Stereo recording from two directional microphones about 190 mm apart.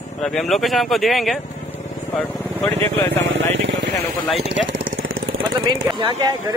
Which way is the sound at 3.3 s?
80° right.